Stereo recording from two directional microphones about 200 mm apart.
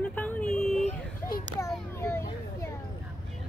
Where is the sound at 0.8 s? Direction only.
45° left (ahead or behind).